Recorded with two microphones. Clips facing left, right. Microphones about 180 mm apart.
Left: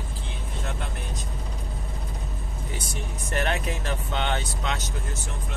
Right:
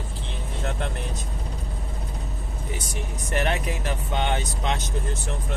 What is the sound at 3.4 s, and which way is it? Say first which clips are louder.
Speech: right 1 dB; 15° right (ahead or behind).